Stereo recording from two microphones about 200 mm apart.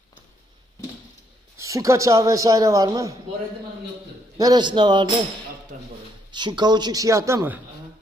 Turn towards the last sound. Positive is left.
turn(degrees=-10)  # may be behind; listen again after turning